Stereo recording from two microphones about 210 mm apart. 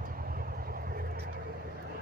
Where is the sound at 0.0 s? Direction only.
45° right (ahead or behind).